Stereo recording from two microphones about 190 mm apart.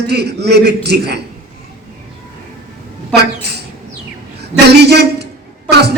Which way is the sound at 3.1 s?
60° right (ahead or behind).